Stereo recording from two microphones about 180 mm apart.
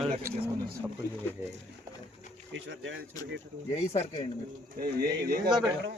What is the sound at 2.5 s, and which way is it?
Speech, 90° right.